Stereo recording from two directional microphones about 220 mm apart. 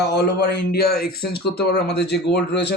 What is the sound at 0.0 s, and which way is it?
A man's voice, 45° left (ahead or behind).